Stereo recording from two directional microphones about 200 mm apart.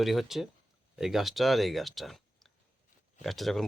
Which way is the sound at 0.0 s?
Centre (ahead or behind).